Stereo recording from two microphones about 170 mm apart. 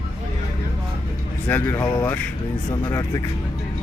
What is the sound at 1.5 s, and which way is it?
Speech, 10° left (ahead or behind).